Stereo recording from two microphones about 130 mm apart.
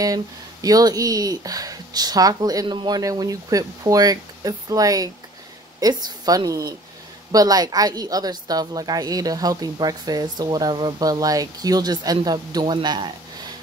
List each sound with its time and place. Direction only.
0.0 s a woman's voice: 30° right (ahead or behind)